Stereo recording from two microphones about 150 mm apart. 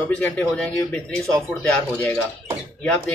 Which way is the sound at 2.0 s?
10° left (ahead or behind).